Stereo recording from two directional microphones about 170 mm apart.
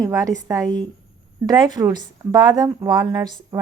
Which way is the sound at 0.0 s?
20° right (ahead or behind).